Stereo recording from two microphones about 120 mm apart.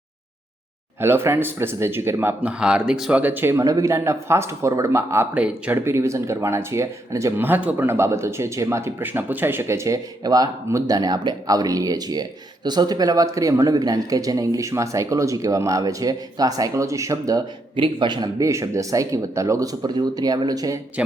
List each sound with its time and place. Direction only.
0.9 s speech: 20° right (ahead or behind)
17.7 s speech: 45° right (ahead or behind)